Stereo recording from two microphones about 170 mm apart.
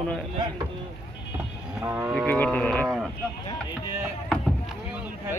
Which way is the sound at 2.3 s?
10° left (ahead or behind).